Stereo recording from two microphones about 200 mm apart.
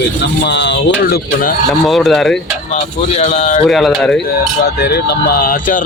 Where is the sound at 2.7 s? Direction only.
35° left (ahead or behind).